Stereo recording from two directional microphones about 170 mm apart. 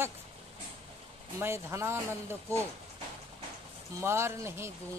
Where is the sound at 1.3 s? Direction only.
15° right (ahead or behind).